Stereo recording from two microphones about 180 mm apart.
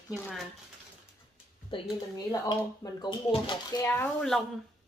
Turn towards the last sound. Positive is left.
turn(degrees=5)  # may be behind; listen again after turning